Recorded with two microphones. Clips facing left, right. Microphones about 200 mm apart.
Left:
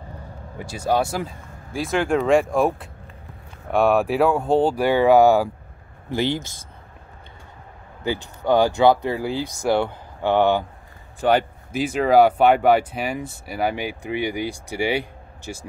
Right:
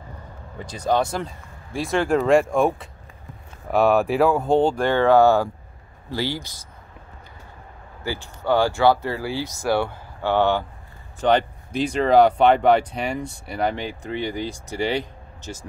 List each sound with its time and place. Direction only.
0.6 s speech: 10° left (ahead or behind)
8.0 s speech: 20° left (ahead or behind)